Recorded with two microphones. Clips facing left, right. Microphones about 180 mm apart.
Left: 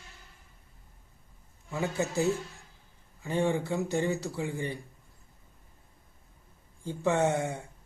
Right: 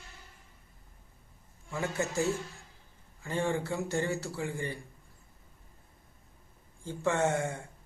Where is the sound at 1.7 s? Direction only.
15° left (ahead or behind).